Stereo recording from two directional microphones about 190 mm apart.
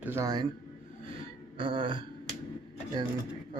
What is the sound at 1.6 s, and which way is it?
Speech, 25° right (ahead or behind).